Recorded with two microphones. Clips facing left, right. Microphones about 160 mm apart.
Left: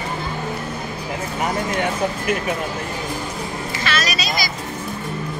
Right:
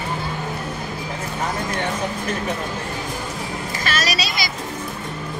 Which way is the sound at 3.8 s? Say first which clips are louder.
Even; 35° right (ahead or behind).